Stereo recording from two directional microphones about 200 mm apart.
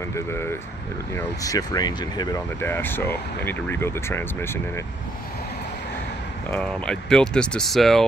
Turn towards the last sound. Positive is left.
turn(degrees=0)  # may be behind; listen again after turning